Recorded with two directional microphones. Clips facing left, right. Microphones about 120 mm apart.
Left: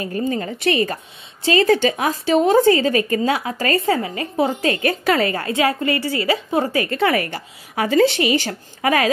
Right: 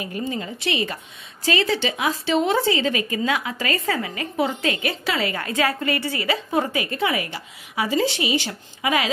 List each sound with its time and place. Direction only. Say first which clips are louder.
0.0 s a woman's voice: left 5 dB; 45° left (ahead or behind)
1.4 s a woman's voice: left 5 dB; 35° left (ahead or behind)
1.7 s a woman's voice: left 6 dB; 45° left (ahead or behind)
3.8 s a woman's voice: left 5 dB; 30° left (ahead or behind)
6.9 s a woman's voice: left 5 dB; 60° left (ahead or behind)